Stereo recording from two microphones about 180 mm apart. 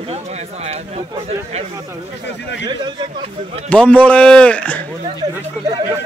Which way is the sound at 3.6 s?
5° left (ahead or behind).